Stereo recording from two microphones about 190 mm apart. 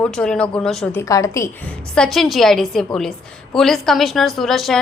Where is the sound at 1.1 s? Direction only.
15° left (ahead or behind).